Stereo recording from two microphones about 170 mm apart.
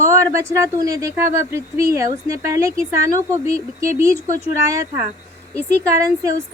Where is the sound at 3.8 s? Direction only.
20° right (ahead or behind).